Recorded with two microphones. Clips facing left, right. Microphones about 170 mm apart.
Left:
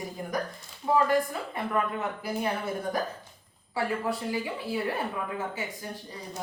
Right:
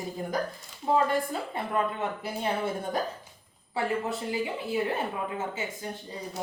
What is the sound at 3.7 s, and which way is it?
Speech, 25° right (ahead or behind).